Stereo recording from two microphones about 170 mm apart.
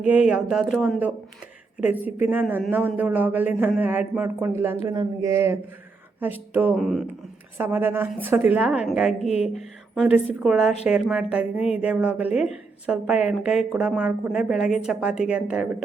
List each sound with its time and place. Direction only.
0.0 s a woman's voice: 10° right (ahead or behind)
7.6 s a woman's voice: 10° right (ahead or behind)
9.2 s speech: 40° left (ahead or behind)
9.9 s a woman's voice: centre (ahead or behind)